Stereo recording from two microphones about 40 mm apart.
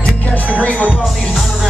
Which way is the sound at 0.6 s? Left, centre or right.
Left.